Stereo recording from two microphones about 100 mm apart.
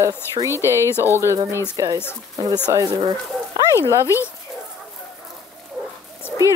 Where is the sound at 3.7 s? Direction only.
25° left (ahead or behind).